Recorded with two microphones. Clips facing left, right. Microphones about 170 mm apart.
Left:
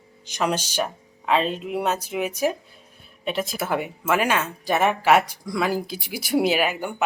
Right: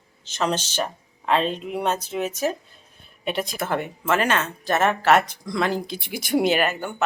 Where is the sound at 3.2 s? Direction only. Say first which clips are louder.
Even; centre (ahead or behind).